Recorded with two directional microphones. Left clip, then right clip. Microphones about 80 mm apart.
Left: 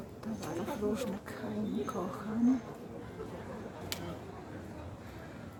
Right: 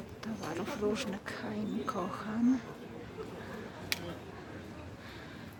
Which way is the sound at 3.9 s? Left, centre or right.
Right.